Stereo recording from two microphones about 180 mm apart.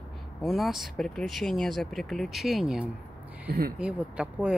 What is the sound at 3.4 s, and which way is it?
Speech, 55° right (ahead or behind).